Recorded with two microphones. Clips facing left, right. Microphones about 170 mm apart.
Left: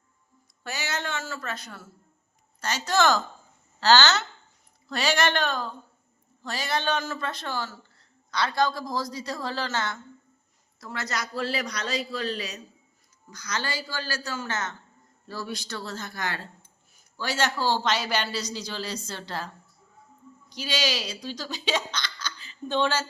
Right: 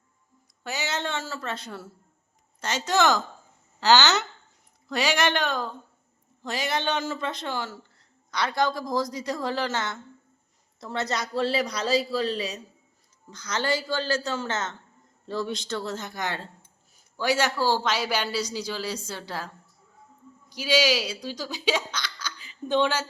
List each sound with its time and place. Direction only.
0.6 s speech: 20° right (ahead or behind)
20.5 s speech: 10° right (ahead or behind)